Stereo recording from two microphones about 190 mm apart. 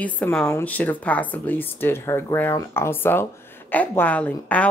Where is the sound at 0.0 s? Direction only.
5° left (ahead or behind).